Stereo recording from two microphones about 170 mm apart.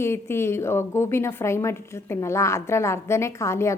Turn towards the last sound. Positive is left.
turn(degrees=15)  # may be behind; listen again after turning